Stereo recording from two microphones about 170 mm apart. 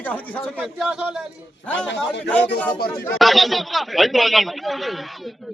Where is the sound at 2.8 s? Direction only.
65° left (ahead or behind).